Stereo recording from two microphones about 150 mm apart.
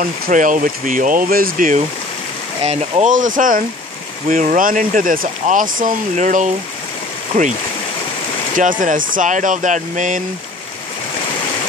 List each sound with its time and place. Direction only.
0.0 s speech: 60° right (ahead or behind)
2.6 s speech: 50° right (ahead or behind)
8.5 s speech: 65° right (ahead or behind)